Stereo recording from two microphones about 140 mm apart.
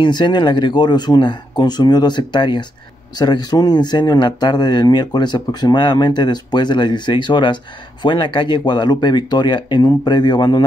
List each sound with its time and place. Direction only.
0.0 s speech: 30° left (ahead or behind)